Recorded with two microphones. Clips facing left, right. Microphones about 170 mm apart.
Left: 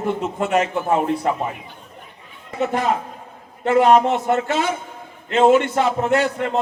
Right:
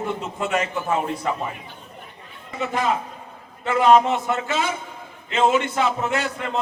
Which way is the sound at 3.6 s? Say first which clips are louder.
Left 2 dB; 55° left (ahead or behind).